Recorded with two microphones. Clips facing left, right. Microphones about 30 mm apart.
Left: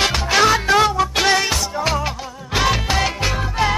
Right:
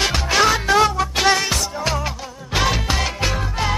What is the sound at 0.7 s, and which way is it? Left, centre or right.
Music, left.